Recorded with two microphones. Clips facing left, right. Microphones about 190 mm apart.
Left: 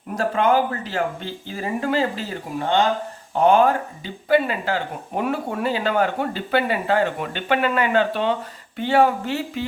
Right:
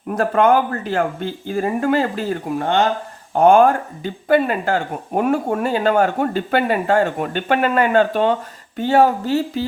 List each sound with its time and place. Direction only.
0.2 s speech: 55° right (ahead or behind); by 9.6 s 40° right (ahead or behind)